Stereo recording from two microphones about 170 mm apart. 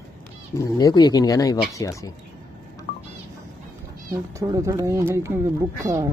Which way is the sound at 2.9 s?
45° left (ahead or behind).